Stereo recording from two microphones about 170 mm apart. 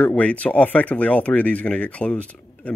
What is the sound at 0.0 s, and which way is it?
Speech, 10° left (ahead or behind).